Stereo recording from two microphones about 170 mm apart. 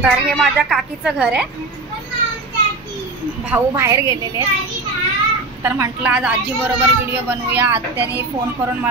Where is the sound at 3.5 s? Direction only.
15° right (ahead or behind).